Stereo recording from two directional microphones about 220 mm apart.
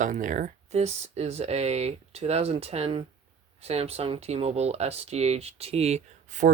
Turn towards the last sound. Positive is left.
turn(degrees=-35)  # may be behind; listen again after turning